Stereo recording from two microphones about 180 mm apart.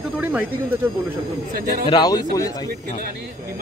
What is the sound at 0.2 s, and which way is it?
Speech, 10° right (ahead or behind).